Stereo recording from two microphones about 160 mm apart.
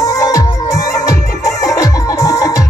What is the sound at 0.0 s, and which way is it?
Music, 20° left (ahead or behind).